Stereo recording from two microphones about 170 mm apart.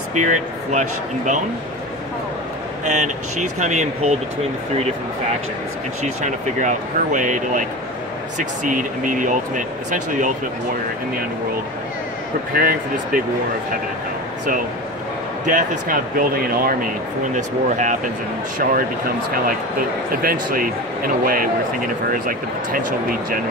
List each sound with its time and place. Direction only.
0.1 s speech: 45° right (ahead or behind)
2.8 s speech: 45° right (ahead or behind)
6.0 s speech: 45° right (ahead or behind)
12.5 s speech: 55° right (ahead or behind)
15.4 s speech: 50° right (ahead or behind)
17.3 s speech: 45° right (ahead or behind)